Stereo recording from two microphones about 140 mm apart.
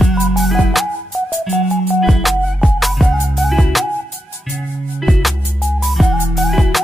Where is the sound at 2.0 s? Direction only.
Centre (ahead or behind).